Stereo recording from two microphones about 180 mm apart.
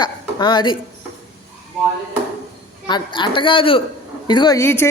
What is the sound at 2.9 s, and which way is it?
Speech, 25° left (ahead or behind).